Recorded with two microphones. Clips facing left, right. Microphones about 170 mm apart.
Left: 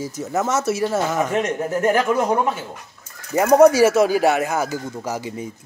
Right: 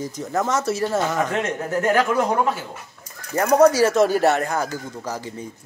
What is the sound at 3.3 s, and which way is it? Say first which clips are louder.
Speech: left 3 dB; 10° left (ahead or behind).